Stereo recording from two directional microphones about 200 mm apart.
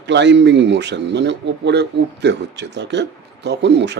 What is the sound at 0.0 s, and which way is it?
Speech, 60° right (ahead or behind).